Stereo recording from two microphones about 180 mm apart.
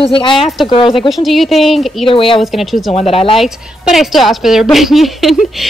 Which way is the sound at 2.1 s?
30° left (ahead or behind).